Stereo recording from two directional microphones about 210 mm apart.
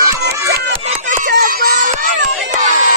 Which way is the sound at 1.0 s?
40° right (ahead or behind).